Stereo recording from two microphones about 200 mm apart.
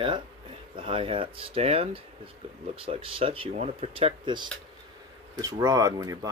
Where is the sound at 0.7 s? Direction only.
25° right (ahead or behind).